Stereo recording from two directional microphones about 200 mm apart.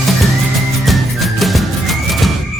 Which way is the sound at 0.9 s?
Centre (ahead or behind).